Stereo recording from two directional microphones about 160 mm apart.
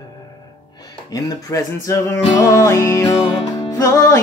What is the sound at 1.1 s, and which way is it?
Music, 20° left (ahead or behind).